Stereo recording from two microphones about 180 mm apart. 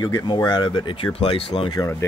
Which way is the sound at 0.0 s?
25° left (ahead or behind).